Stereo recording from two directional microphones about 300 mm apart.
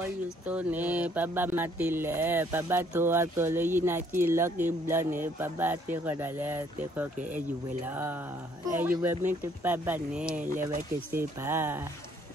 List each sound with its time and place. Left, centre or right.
0.0 s speech: centre
10.7 s speech: right
11.4 s speech: centre